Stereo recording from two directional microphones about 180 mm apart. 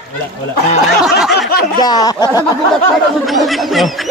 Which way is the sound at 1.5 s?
60° left (ahead or behind).